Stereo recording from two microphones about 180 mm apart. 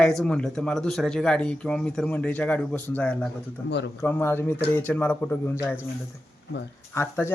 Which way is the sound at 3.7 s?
70° left (ahead or behind).